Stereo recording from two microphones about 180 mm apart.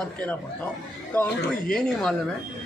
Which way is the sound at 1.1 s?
10° left (ahead or behind).